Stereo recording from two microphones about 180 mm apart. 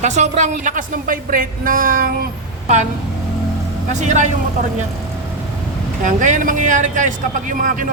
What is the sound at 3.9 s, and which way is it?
Speech, 40° right (ahead or behind).